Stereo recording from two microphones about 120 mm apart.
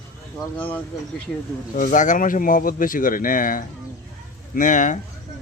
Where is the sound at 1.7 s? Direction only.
90° left.